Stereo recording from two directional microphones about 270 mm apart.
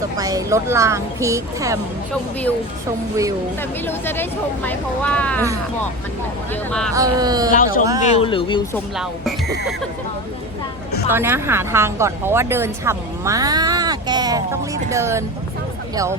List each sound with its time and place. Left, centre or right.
0.2 s a woman's voice: centre
3.6 s speech: centre
6.5 s speech: centre
6.9 s a woman's voice: centre
7.5 s speech: left
7.9 s a woman's voice: centre
8.2 s speech: centre
11.1 s a woman's voice: centre